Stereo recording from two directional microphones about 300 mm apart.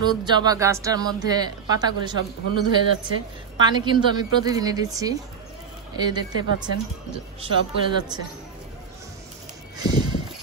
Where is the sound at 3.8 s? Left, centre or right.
Centre.